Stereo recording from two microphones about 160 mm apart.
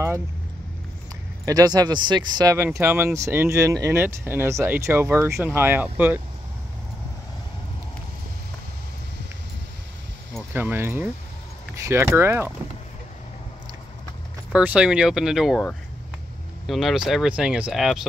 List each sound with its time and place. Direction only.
1.4 s speech: 25° right (ahead or behind)
10.5 s speech: 15° right (ahead or behind)
14.5 s speech: 5° right (ahead or behind)
16.6 s speech: centre (ahead or behind)